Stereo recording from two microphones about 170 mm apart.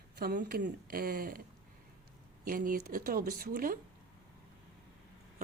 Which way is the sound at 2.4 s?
55° right (ahead or behind).